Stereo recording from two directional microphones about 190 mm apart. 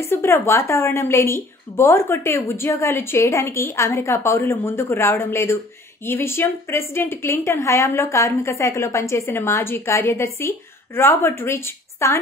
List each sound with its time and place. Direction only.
0.0 s a woman's voice: 15° left (ahead or behind)